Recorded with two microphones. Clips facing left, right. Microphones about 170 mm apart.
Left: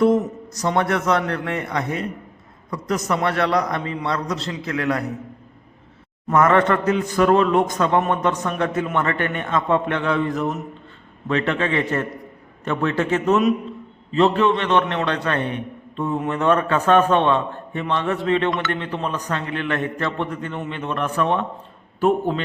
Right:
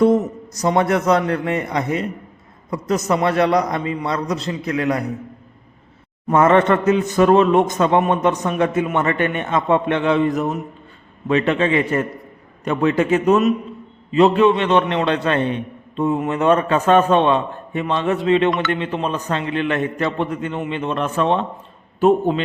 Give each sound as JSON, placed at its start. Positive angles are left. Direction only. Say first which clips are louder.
{"t": 0.7, "sound": "a man's voice", "louder": "right 4 dB", "side_deg": -15}
{"t": 6.3, "sound": "a man's voice", "louder": "right 3 dB", "side_deg": -25}